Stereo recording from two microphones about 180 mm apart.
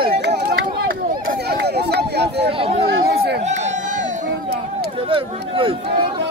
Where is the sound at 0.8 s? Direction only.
60° right (ahead or behind).